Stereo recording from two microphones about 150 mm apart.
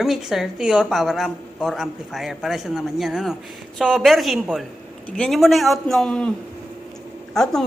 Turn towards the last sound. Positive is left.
turn(degrees=5)  # may be behind; listen again after turning